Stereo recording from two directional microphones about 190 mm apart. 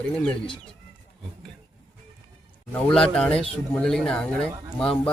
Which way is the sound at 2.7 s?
5° left (ahead or behind).